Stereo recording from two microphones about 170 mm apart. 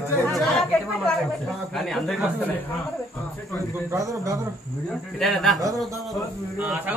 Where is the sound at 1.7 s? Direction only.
Centre (ahead or behind).